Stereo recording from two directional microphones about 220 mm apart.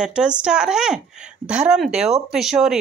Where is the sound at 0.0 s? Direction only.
5° right (ahead or behind).